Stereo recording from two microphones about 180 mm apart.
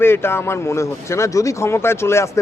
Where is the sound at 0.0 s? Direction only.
15° left (ahead or behind).